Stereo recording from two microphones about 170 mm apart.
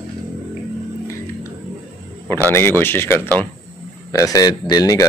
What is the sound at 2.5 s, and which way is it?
A man's voice, 15° left (ahead or behind).